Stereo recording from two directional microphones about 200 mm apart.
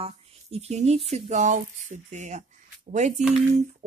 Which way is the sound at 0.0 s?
30° right (ahead or behind).